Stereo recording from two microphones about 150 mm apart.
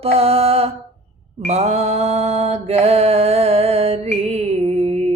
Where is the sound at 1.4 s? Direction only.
50° right (ahead or behind).